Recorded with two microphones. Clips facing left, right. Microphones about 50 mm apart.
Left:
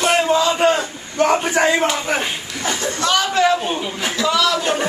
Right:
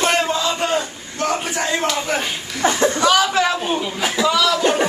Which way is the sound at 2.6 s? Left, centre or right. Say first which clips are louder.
Right 7 dB; right.